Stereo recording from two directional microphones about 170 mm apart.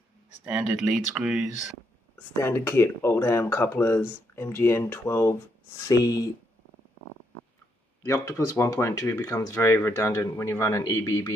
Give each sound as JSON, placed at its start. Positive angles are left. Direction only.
{"t": 0.5, "sound": "speech", "side_deg": -5}
{"t": 2.4, "sound": "speech", "side_deg": 15}
{"t": 8.0, "sound": "speech", "side_deg": 20}